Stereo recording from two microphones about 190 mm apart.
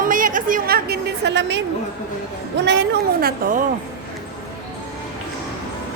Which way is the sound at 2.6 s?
65° right (ahead or behind).